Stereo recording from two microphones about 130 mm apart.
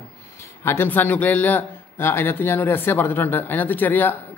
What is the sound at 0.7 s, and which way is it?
Speech, 15° left (ahead or behind).